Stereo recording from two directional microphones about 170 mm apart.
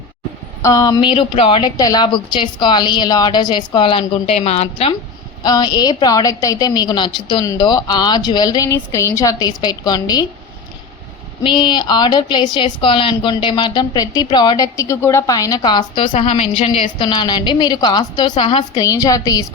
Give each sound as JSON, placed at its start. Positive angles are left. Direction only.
{"t": 0.6, "sound": "a woman's voice", "side_deg": 20}
{"t": 5.4, "sound": "a woman's voice", "side_deg": 25}
{"t": 11.4, "sound": "a woman's voice", "side_deg": 25}